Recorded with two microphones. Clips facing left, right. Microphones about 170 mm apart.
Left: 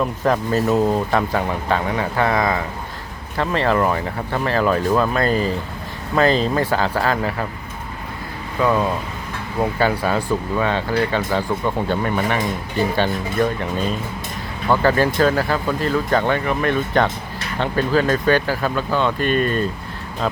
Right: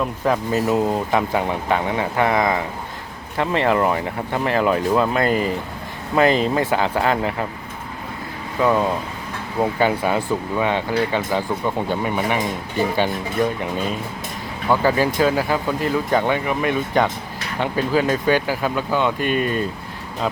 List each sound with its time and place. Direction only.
0.3 s speech: 15° right (ahead or behind)
8.6 s speech: 20° right (ahead or behind)
14.7 s speech: 10° right (ahead or behind)